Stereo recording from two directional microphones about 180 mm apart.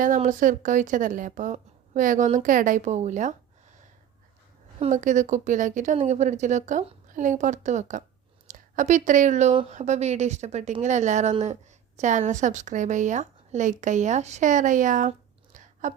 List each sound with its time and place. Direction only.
0.0 s speech: 45° right (ahead or behind)
4.8 s a woman's voice: 45° right (ahead or behind)
15.5 s chewing: 45° right (ahead or behind)